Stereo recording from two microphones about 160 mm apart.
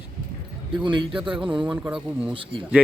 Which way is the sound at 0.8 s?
30° right (ahead or behind).